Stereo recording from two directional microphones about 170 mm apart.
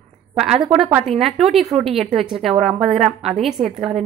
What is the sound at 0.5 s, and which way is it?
Speech, 35° right (ahead or behind).